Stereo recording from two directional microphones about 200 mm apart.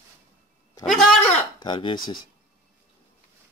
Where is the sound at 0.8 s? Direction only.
Centre (ahead or behind).